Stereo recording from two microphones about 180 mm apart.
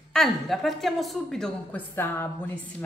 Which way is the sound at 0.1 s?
Centre (ahead or behind).